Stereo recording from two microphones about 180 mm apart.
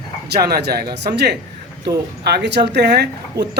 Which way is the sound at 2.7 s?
70° right (ahead or behind).